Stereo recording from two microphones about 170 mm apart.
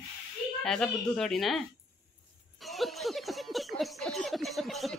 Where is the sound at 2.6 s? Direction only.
Centre (ahead or behind).